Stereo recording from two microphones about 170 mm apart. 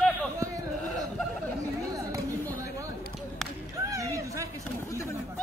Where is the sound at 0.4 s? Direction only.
20° right (ahead or behind).